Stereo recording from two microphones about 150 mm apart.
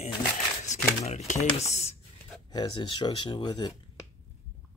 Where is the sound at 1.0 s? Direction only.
50° left (ahead or behind).